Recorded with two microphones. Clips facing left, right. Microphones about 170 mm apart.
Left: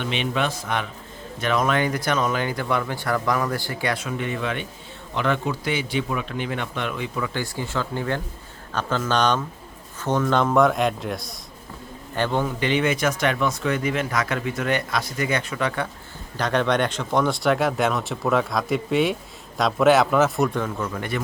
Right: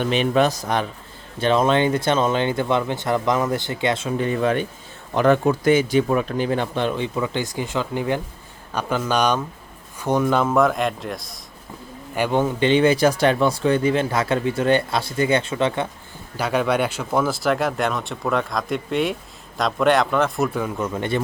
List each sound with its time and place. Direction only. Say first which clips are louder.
0.0 s a man's voice: right 6 dB; 40° right (ahead or behind); by 11.3 s centre (ahead or behind)
12.1 s a man's voice: right 3 dB; 15° right (ahead or behind)
12.5 s speech: right 6 dB; 30° right (ahead or behind)
16.4 s speech: right 1 dB; 5° right (ahead or behind)
20.7 s speech: right 4 dB; 20° right (ahead or behind)